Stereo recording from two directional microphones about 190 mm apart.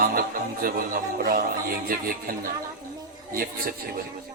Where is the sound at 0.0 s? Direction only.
50° right (ahead or behind).